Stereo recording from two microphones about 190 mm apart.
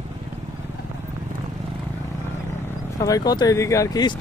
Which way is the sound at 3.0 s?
20° left (ahead or behind).